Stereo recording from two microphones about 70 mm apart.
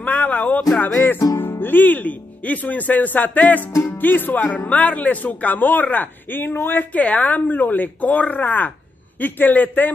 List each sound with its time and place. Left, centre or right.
0.0 s a sound: left
0.7 s music: left
1.3 s speech: left
3.7 s music: left
4.0 s speech: left